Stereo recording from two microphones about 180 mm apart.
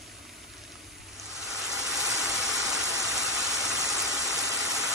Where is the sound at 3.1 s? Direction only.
15° left (ahead or behind).